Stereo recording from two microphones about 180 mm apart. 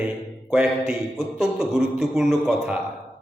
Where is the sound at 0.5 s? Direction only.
5° right (ahead or behind).